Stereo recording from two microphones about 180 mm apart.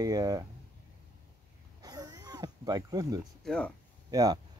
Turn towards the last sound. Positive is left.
turn(degrees=-20)  # may be behind; listen again after turning